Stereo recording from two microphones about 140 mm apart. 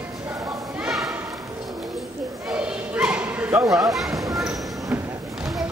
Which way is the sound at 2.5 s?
5° right (ahead or behind).